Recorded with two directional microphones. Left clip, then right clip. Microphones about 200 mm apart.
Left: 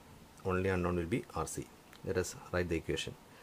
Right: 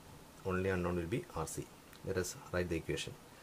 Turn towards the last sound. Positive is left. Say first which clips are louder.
# left 2 dB
turn(degrees=25)  # may be behind; listen again after turning